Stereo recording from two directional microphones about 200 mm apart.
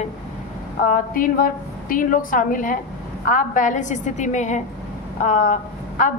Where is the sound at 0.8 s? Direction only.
45° left (ahead or behind).